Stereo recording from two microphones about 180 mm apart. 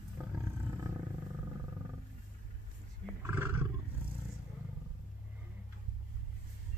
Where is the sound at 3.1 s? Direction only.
10° right (ahead or behind).